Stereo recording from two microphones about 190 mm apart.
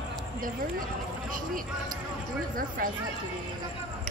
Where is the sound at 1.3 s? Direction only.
50° right (ahead or behind).